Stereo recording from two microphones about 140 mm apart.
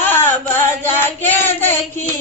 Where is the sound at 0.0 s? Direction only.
15° left (ahead or behind).